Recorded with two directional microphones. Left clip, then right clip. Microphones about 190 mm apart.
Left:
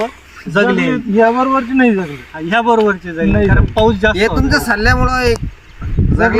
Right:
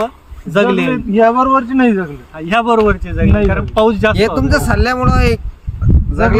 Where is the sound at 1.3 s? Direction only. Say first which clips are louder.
Right 2 dB; 20° right (ahead or behind).